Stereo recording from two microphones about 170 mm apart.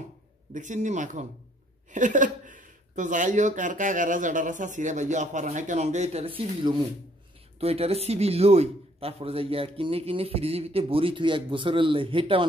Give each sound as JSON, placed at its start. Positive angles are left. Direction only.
{"t": 0.5, "sound": "speech", "side_deg": -45}